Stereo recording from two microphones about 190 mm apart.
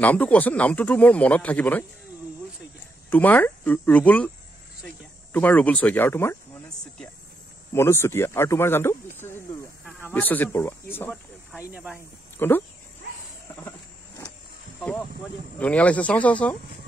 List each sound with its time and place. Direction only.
0.0 s speech: 10° left (ahead or behind)
3.1 s speech: 10° left (ahead or behind)
7.7 s speech: 15° left (ahead or behind)
9.8 s snake: 10° right (ahead or behind)
10.1 s speech: 10° left (ahead or behind)
11.7 s speech: 5° right (ahead or behind)
12.4 s speech: 10° left (ahead or behind)
13.7 s wild animals: 15° left (ahead or behind)
14.8 s speech: 5° left (ahead or behind)